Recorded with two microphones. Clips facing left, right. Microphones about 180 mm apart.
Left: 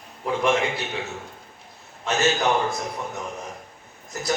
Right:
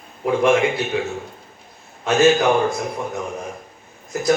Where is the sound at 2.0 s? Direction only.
55° right (ahead or behind).